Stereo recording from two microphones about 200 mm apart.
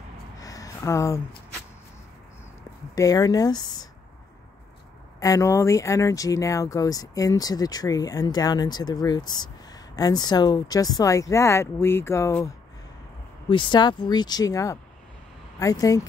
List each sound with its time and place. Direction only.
0.4 s a sound: 15° left (ahead or behind)
3.0 s speech: 20° left (ahead or behind)
5.2 s speech: 15° left (ahead or behind)
13.5 s speech: 25° left (ahead or behind)